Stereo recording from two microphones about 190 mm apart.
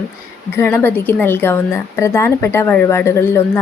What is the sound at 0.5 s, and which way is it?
A woman's voice, 10° left (ahead or behind).